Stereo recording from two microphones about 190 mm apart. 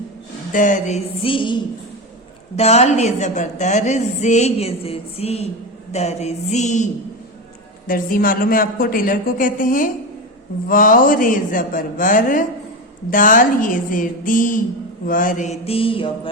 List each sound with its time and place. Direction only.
0.5 s a woman's voice: 40° left (ahead or behind); by 1.5 s 25° left (ahead or behind)
2.6 s a woman's voice: 35° left (ahead or behind)
7.9 s a woman's voice: 45° left (ahead or behind); by 16.3 s 25° left (ahead or behind)